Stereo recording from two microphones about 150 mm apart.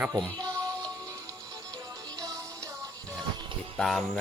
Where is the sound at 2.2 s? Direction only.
25° right (ahead or behind).